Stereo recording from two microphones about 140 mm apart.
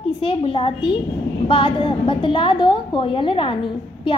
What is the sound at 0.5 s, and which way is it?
A woman's voice, 40° left (ahead or behind).